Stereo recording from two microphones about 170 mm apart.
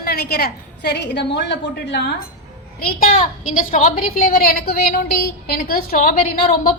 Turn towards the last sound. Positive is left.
turn(degrees=55)  # may be behind; listen again after turning